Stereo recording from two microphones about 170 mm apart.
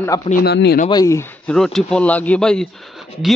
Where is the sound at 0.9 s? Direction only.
15° left (ahead or behind).